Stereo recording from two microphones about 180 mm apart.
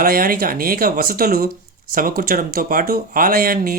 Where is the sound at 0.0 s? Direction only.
55° right (ahead or behind).